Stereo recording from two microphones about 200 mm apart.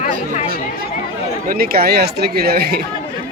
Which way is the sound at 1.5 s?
50° right (ahead or behind).